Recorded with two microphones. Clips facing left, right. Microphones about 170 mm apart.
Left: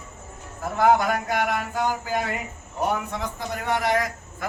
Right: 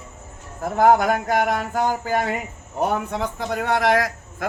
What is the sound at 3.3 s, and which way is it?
A man's voice, 80° right.